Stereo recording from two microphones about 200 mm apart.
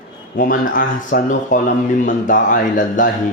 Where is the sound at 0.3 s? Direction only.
45° left (ahead or behind).